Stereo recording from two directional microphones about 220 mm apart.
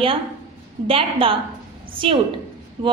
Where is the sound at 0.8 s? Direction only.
25° right (ahead or behind).